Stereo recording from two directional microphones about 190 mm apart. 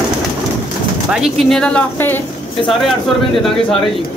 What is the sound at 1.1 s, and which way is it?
Speech, centre (ahead or behind).